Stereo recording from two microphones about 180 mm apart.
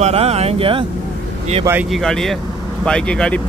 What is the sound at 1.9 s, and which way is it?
Speech, centre (ahead or behind).